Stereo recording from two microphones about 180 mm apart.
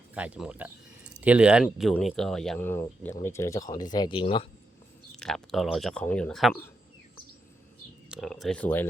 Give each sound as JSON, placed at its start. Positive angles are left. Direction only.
{"t": 0.1, "sound": "speech", "side_deg": -5}
{"t": 5.1, "sound": "speech", "side_deg": 5}
{"t": 8.1, "sound": "speech", "side_deg": 0}